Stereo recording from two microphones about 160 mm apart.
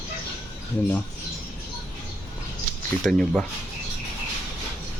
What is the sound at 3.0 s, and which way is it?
Speech, 5° left (ahead or behind).